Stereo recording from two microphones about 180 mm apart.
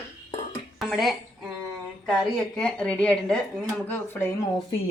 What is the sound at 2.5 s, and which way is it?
Speech, 5° left (ahead or behind).